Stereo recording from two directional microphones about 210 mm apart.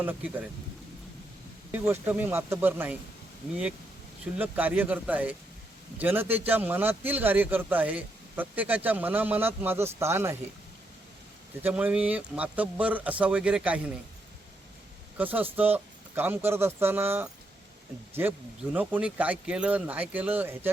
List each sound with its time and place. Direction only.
0.0 s a man's voice: 10° right (ahead or behind)
1.7 s a man's voice: 10° right (ahead or behind)
4.4 s a man's voice: 10° right (ahead or behind)
11.6 s a man's voice: 5° right (ahead or behind)
15.2 s a man's voice: 10° right (ahead or behind)